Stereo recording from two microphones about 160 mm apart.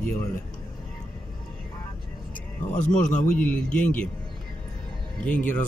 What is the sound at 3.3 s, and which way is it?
Speech, 5° left (ahead or behind).